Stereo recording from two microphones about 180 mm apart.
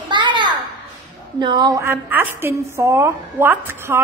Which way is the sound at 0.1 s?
25° right (ahead or behind).